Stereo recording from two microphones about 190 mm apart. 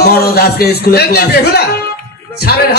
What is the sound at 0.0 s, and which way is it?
Speech, 55° left (ahead or behind).